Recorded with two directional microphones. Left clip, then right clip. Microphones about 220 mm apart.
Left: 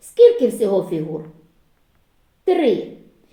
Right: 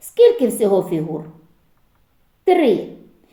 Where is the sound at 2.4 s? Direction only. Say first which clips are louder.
Right 3 dB; 30° right (ahead or behind).